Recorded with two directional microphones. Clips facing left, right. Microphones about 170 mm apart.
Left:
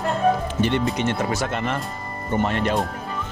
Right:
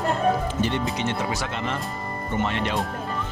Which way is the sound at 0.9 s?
50° left (ahead or behind).